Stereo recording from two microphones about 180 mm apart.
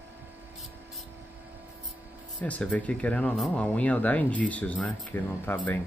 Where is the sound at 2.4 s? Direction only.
10° left (ahead or behind).